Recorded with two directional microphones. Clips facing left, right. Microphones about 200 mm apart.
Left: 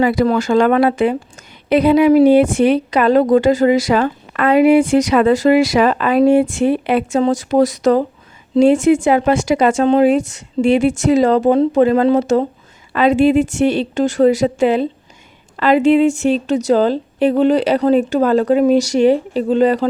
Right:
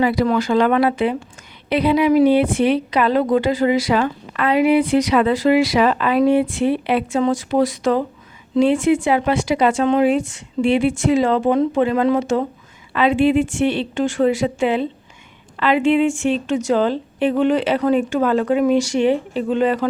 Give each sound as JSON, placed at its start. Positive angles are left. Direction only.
{"t": 0.0, "sound": "a woman's voice", "side_deg": 45}